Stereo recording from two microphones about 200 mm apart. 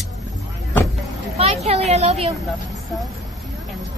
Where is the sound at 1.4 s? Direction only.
30° right (ahead or behind).